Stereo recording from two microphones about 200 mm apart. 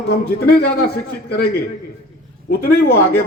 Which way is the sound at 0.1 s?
50° left (ahead or behind).